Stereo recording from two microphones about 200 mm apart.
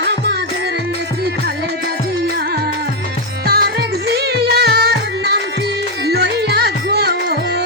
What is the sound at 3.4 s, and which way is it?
Music, 50° right (ahead or behind).